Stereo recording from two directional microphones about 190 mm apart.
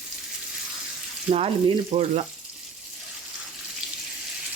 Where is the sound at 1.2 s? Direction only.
30° right (ahead or behind).